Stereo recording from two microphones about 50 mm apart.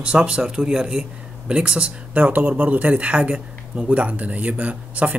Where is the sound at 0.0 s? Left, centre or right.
Centre.